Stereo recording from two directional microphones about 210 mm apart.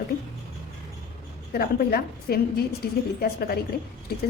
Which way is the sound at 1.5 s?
45° left (ahead or behind).